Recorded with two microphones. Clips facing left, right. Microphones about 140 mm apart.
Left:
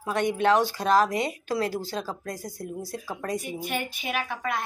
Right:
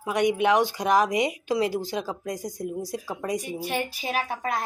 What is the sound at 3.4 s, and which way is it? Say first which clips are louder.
Child singing: right 2 dB; 35° right (ahead or behind).